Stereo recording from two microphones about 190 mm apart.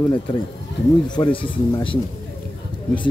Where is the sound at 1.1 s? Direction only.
25° left (ahead or behind).